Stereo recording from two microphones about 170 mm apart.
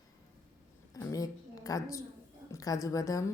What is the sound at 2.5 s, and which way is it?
Speech, 20° left (ahead or behind).